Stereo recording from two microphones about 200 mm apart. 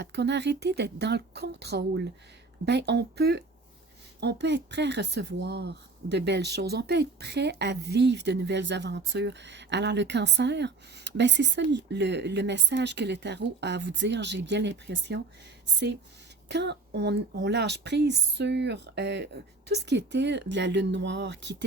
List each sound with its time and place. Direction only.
0.0 s speech: 60° right (ahead or behind)
16.5 s speech: 60° right (ahead or behind)